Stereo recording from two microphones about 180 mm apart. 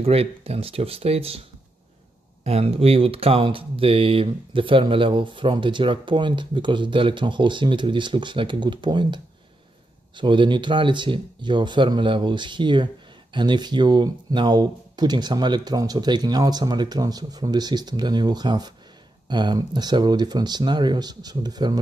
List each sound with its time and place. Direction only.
0.0 s speech: 35° right (ahead or behind)
2.4 s speech: 35° right (ahead or behind)